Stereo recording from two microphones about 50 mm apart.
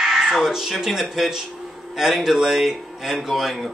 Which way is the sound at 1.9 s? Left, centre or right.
Centre.